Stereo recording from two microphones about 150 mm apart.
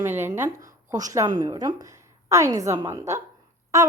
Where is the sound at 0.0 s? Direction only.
15° right (ahead or behind).